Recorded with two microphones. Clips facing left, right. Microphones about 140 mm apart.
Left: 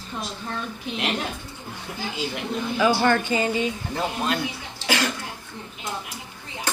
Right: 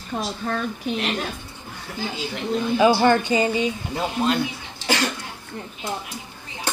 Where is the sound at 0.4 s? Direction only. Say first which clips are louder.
Right 7 dB; 60° right (ahead or behind).